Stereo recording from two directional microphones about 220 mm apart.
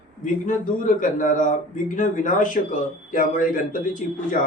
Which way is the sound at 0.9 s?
35° left (ahead or behind).